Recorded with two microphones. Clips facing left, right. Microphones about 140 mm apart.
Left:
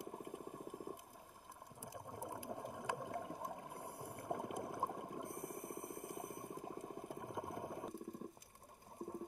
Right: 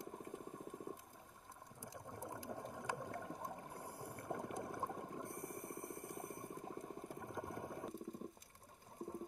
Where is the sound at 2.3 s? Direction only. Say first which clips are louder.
Left 1 dB; 25° left (ahead or behind).